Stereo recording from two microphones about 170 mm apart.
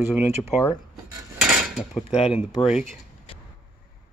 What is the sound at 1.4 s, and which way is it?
Dishes, centre (ahead or behind).